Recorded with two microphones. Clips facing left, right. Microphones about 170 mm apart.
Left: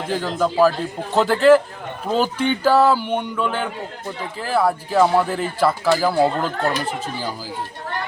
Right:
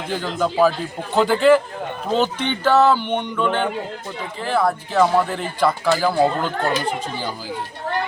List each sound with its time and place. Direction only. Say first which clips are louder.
0.1 s speech: left 1 dB; centre (ahead or behind)